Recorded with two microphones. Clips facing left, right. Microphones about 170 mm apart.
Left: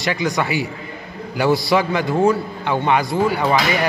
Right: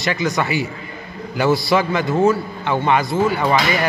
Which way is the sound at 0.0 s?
15° left (ahead or behind).